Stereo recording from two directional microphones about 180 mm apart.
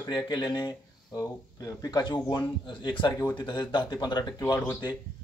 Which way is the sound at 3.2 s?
15° left (ahead or behind).